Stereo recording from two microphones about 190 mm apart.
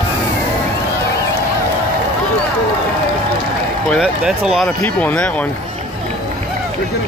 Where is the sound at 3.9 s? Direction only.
5° right (ahead or behind).